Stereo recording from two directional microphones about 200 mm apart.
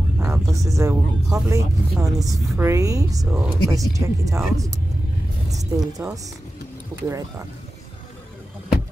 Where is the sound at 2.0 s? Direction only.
15° right (ahead or behind).